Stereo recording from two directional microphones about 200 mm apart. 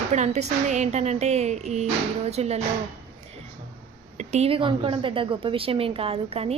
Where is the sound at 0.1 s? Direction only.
35° right (ahead or behind).